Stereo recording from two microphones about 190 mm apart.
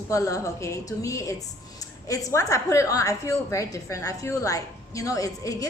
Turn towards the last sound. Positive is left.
turn(degrees=20)  # may be behind; listen again after turning